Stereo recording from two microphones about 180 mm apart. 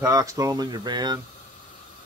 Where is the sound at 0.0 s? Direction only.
20° right (ahead or behind).